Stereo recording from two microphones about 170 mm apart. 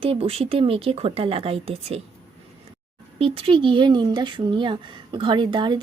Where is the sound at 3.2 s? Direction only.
30° right (ahead or behind).